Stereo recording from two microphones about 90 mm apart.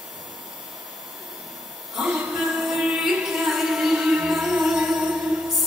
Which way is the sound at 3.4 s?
5° right (ahead or behind).